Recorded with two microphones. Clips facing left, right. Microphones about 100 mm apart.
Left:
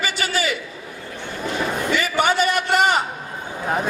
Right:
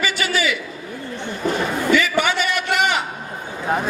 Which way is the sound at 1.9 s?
45° left (ahead or behind).